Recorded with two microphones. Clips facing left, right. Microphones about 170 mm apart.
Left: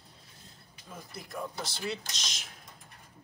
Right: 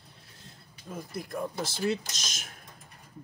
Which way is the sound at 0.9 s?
50° right (ahead or behind).